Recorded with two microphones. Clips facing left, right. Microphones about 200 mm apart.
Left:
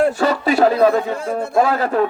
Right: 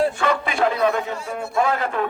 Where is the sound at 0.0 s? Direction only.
40° left (ahead or behind).